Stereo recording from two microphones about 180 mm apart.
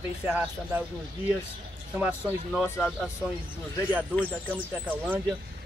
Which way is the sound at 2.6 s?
15° left (ahead or behind).